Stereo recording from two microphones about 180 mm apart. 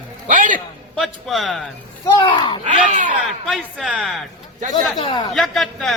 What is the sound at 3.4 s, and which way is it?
Speech, centre (ahead or behind).